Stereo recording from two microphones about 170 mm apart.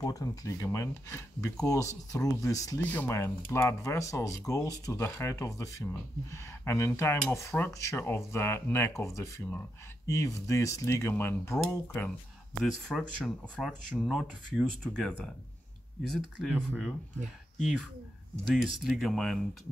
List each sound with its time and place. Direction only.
0.0 s speech: 20° left (ahead or behind)
12.9 s speech: centre (ahead or behind)
18.4 s speech: centre (ahead or behind)